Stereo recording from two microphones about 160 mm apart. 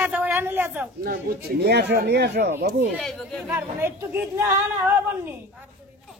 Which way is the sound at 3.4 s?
15° right (ahead or behind).